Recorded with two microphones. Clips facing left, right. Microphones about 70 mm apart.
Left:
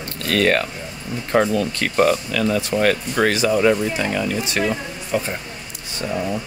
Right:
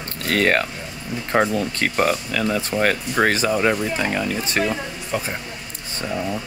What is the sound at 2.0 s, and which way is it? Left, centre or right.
Speech, right.